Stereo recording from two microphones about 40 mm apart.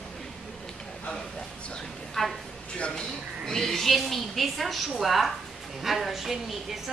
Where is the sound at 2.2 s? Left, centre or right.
Centre.